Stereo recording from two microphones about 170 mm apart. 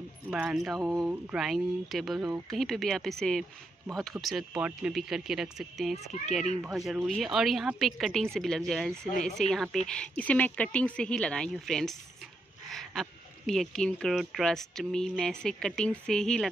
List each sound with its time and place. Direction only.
0.3 s speech: 5° right (ahead or behind)
0.7 s speech: 20° right (ahead or behind)
1.0 s speech: 5° right (ahead or behind)